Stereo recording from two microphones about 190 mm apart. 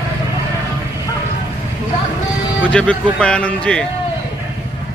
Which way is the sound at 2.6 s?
5° left (ahead or behind).